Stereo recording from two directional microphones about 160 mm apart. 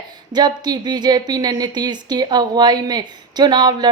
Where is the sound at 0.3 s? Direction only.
25° right (ahead or behind).